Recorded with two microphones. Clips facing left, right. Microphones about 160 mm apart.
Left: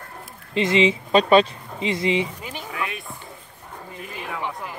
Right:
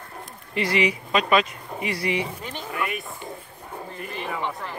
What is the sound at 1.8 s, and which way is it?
Speech, 20° left (ahead or behind).